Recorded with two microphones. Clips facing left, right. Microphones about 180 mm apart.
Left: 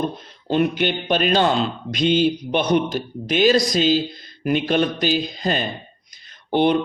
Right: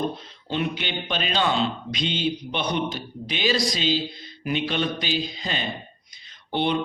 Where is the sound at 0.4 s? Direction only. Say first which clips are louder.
Left 8 dB; 45° left (ahead or behind).